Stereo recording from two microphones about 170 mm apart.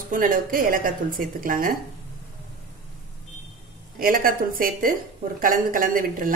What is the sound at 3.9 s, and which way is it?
A woman's voice, 55° right (ahead or behind).